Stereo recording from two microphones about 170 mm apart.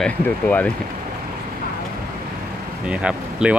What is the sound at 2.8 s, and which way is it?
Speech, 5° right (ahead or behind).